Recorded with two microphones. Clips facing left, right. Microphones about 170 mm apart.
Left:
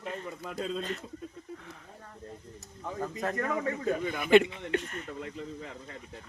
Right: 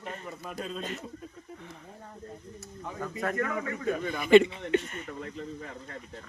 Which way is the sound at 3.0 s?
20° left (ahead or behind).